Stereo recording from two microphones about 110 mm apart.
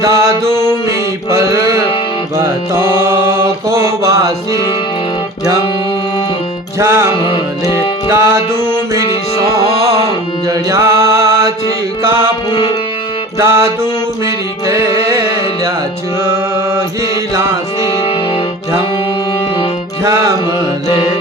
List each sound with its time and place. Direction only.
0.0 s music: 25° right (ahead or behind)
1.3 s mantra: 25° right (ahead or behind)
2.9 s mantra: 20° right (ahead or behind)
6.7 s music: 20° right (ahead or behind)
9.0 s music: 30° left (ahead or behind)
10.5 s mantra: 25° right (ahead or behind)
12.5 s music: 40° left (ahead or behind)
13.4 s music: 20° right (ahead or behind)